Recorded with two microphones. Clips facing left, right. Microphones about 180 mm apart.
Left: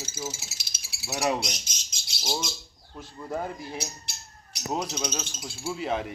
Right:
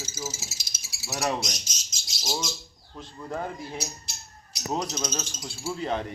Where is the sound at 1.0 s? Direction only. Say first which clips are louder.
Left 1 dB; 10° left (ahead or behind).